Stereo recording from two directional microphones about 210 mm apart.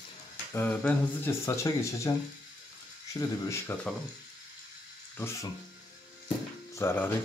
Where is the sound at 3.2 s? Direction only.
15° left (ahead or behind).